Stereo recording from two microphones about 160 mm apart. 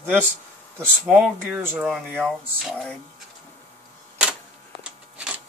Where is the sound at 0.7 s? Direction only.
Centre (ahead or behind).